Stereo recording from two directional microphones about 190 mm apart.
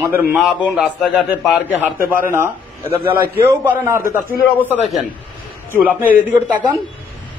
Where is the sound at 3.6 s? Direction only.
15° right (ahead or behind).